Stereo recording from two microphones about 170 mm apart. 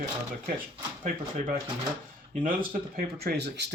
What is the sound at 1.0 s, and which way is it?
Speech, 45° right (ahead or behind).